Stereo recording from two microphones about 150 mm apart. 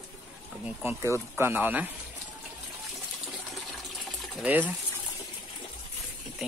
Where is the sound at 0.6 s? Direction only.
15° right (ahead or behind).